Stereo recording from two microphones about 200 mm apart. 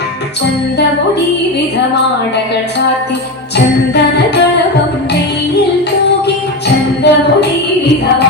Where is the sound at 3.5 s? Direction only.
55° left (ahead or behind).